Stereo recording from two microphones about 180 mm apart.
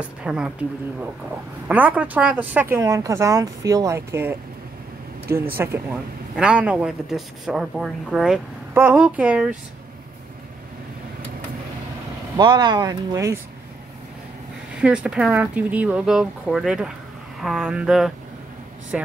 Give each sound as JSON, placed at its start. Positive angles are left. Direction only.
{"t": 0.2, "sound": "a man's voice", "side_deg": -5}
{"t": 1.7, "sound": "speech", "side_deg": -10}
{"t": 5.6, "sound": "a man's voice", "side_deg": -10}
{"t": 12.4, "sound": "speech", "side_deg": -25}
{"t": 14.8, "sound": "a man's voice", "side_deg": -5}